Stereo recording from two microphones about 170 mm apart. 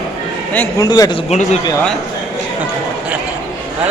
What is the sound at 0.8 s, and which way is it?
Speech, 25° left (ahead or behind).